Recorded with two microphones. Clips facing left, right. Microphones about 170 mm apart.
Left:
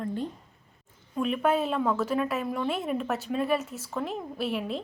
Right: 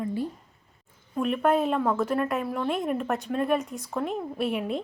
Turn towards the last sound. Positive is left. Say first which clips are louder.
# right 3 dB
turn(degrees=0)  # may be behind; listen again after turning